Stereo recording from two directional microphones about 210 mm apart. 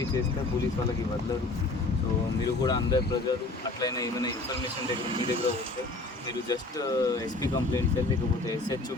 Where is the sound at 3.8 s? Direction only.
15° left (ahead or behind).